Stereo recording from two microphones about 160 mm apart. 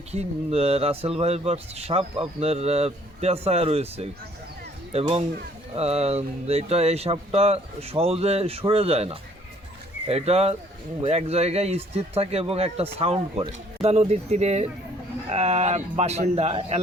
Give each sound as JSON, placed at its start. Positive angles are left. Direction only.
{"t": 0.1, "sound": "a man's voice", "side_deg": -40}